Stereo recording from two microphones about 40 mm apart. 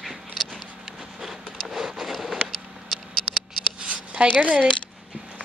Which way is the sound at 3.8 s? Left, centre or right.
Right.